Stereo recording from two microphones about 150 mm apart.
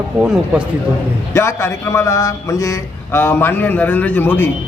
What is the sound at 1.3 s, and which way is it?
A man's voice, 20° left (ahead or behind).